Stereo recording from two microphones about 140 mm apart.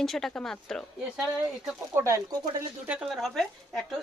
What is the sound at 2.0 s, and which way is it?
Speech, 20° right (ahead or behind).